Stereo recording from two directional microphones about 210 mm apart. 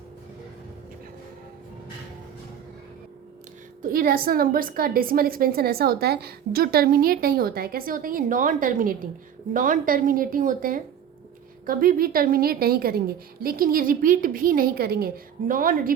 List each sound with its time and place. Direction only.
3.8 s a woman's voice: 45° right (ahead or behind)